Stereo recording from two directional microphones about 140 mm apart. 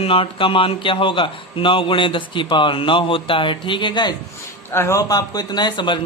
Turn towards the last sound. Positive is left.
turn(degrees=30)  # may be behind; listen again after turning